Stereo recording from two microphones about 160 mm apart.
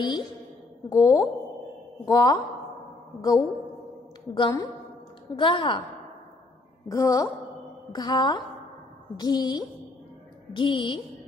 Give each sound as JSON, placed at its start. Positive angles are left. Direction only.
{"t": 0.8, "sound": "a woman's voice", "side_deg": 20}
{"t": 6.9, "sound": "a woman's voice", "side_deg": 20}